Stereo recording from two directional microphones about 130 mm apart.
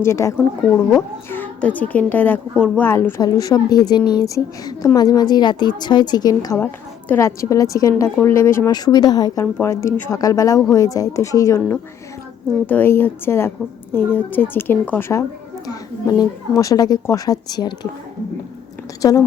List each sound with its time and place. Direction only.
0.0 s a woman's voice: 20° left (ahead or behind)
3.2 s a woman's voice: 30° left (ahead or behind)
6.6 s a woman's voice: 15° left (ahead or behind)
8.7 s a woman's voice: 30° left (ahead or behind)
15.6 s a woman's voice: 30° left (ahead or behind)